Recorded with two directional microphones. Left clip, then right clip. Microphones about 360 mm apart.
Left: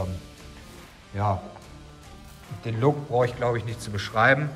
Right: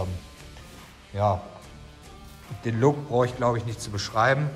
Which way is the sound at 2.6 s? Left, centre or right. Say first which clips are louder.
Right 1 dB; centre.